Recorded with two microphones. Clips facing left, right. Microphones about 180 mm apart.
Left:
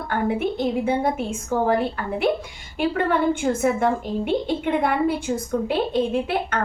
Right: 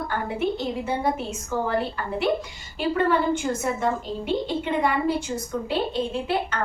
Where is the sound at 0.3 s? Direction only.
50° left (ahead or behind).